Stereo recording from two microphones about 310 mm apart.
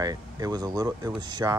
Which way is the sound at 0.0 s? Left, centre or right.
Centre.